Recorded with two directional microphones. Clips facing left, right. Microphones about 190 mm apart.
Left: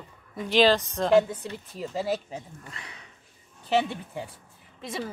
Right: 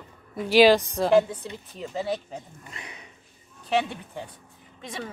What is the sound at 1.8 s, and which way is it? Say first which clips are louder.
Speech: left 1 dB; 5° left (ahead or behind).